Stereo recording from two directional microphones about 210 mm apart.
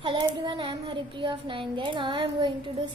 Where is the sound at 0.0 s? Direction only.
25° right (ahead or behind).